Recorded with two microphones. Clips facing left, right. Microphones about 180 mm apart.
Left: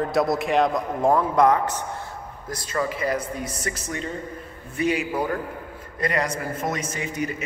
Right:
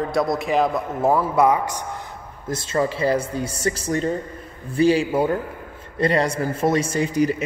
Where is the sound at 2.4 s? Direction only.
25° right (ahead or behind).